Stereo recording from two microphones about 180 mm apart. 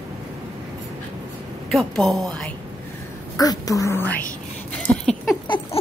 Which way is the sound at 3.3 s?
20° left (ahead or behind).